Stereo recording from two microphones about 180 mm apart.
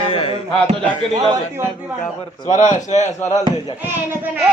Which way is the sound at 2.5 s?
40° left (ahead or behind).